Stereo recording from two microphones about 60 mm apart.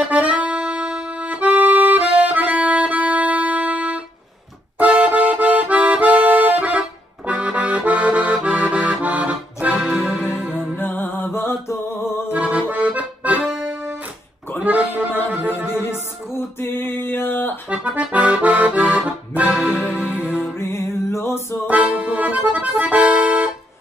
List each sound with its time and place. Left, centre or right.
0.0 s music: right
4.7 s accordion: right
10.8 s music: left
12.3 s accordion: right
14.6 s a sound: right
15.2 s music: right
15.8 s music: left
17.6 s accordion: right
20.3 s music: left
21.6 s accordion: right